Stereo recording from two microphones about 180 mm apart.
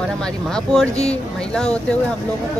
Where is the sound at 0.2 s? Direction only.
5° left (ahead or behind).